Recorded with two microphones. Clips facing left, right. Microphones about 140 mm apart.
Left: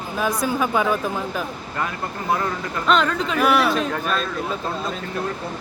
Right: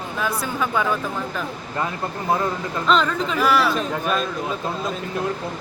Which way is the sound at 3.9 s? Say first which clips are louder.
Right 1 dB; 10° right (ahead or behind).